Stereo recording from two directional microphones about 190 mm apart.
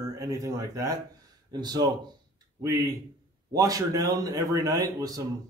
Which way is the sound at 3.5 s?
20° right (ahead or behind).